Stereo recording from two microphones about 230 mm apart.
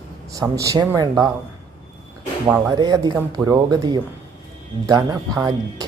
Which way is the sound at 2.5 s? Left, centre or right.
Centre.